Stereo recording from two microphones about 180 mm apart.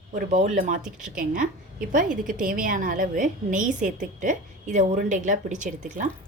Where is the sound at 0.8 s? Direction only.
5° right (ahead or behind).